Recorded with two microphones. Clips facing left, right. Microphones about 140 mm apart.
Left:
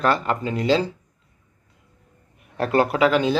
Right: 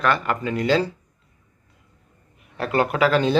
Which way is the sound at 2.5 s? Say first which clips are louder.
Left 2 dB; 40° left (ahead or behind).